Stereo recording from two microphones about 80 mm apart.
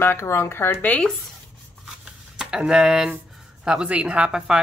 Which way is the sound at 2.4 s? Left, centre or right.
Centre.